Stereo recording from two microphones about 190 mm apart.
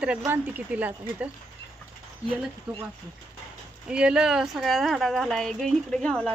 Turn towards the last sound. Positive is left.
turn(degrees=5)  # may be behind; listen again after turning